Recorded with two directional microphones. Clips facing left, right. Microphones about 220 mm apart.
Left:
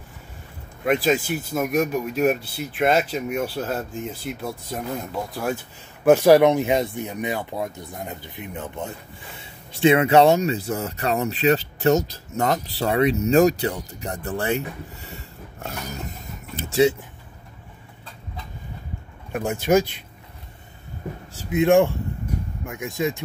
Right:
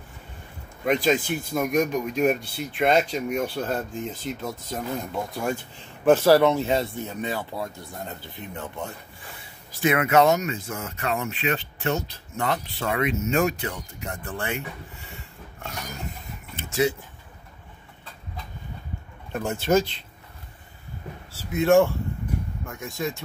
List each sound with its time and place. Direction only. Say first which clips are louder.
0.8 s speech: left 1 dB; 5° left (ahead or behind)
6.0 s speech: left 3 dB; 15° left (ahead or behind); by 14.6 s 40° left (ahead or behind)
15.0 s a sound: left 4 dB; 40° left (ahead or behind)
19.3 s speech: left 3 dB; 10° left (ahead or behind)
21.3 s speech: left 2 dB; 15° left (ahead or behind)